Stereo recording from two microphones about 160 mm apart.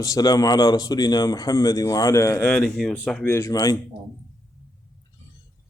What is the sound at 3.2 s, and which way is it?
Speech, 15° left (ahead or behind).